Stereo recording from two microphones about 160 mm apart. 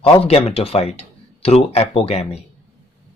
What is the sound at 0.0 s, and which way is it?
Speech, 35° left (ahead or behind).